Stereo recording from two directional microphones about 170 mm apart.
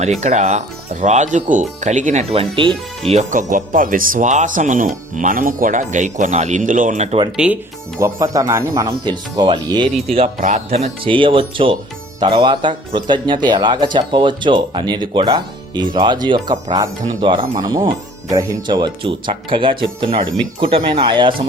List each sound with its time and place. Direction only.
0.2 s speech: 45° right (ahead or behind)
2.3 s speech: 30° right (ahead or behind)
3.1 s speech: 45° right (ahead or behind)
7.3 s speech: 10° right (ahead or behind); by 9.9 s 25° right (ahead or behind)
10.7 s speech: 40° right (ahead or behind)